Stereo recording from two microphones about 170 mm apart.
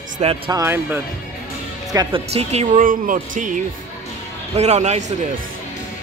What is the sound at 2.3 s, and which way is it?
Speech, 40° right (ahead or behind).